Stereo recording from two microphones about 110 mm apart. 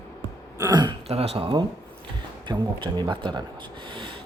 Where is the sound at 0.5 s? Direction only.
35° right (ahead or behind).